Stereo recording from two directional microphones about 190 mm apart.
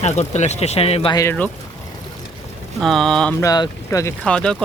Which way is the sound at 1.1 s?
15° left (ahead or behind).